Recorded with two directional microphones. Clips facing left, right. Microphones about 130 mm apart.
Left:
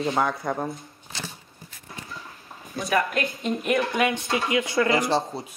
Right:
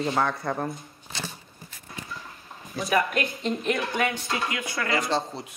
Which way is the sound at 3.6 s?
25° left (ahead or behind).